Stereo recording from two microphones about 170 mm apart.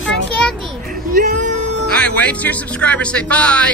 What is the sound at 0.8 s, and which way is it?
Speech, 60° right (ahead or behind).